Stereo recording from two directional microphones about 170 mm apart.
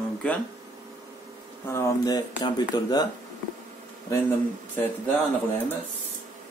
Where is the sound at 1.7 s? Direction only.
20° left (ahead or behind).